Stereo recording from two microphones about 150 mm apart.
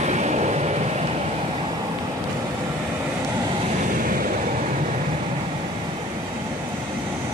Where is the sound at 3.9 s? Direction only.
70° right (ahead or behind).